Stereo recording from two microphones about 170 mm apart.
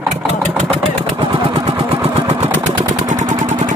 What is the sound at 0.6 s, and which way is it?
Vehicle, 35° right (ahead or behind).